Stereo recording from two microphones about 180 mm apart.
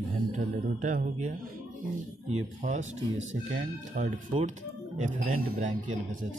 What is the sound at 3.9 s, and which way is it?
Speech, 50° right (ahead or behind).